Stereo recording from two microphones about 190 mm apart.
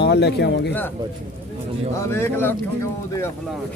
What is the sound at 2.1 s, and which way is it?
Speech, 10° left (ahead or behind).